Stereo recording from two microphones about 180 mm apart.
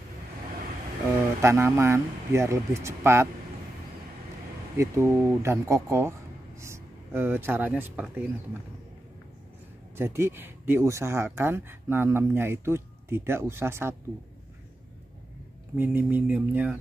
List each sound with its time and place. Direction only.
1.4 s speech: 15° right (ahead or behind)
4.7 s speech: 15° right (ahead or behind)
9.9 s speech: 15° right (ahead or behind)
15.7 s speech: 10° right (ahead or behind)